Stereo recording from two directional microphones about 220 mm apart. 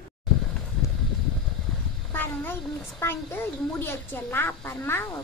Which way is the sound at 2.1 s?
10° left (ahead or behind).